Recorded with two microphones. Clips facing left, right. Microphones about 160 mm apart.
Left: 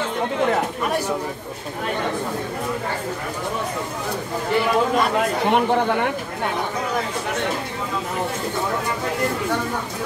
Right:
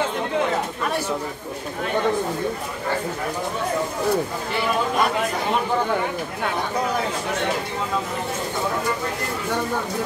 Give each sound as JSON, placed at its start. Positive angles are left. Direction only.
{"t": 5.5, "sound": "speech", "side_deg": 65}